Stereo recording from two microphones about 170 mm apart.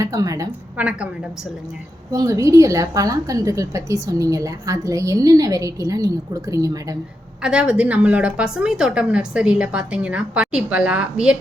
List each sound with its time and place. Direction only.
0.0 s a woman's voice: 20° right (ahead or behind)
0.8 s a woman's voice: 5° right (ahead or behind)
2.1 s a woman's voice: 20° right (ahead or behind)
7.4 s a woman's voice: 5° right (ahead or behind)